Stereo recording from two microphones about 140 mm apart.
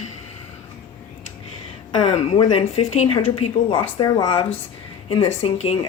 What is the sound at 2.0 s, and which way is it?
Speech, 40° left (ahead or behind).